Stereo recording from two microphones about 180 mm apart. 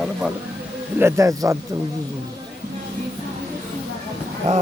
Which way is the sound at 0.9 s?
15° right (ahead or behind).